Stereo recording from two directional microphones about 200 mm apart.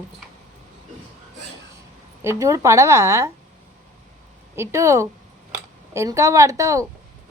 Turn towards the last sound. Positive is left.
turn(degrees=-15)  # may be behind; listen again after turning